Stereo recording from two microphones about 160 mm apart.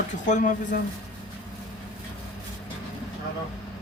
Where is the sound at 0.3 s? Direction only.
50° left (ahead or behind).